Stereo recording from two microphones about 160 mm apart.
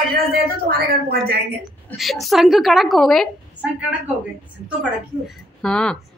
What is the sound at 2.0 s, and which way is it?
A woman's voice, centre (ahead or behind).